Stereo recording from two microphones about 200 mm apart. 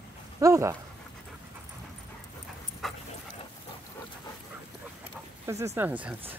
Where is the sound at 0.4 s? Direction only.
15° right (ahead or behind).